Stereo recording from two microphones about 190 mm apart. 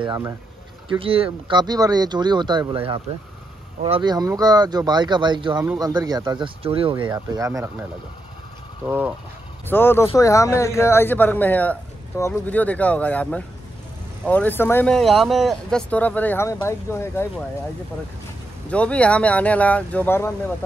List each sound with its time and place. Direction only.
0.0 s speech: 20° right (ahead or behind)
8.8 s speech: 10° right (ahead or behind)
9.7 s speech: 10° left (ahead or behind)
18.7 s speech: 5° left (ahead or behind)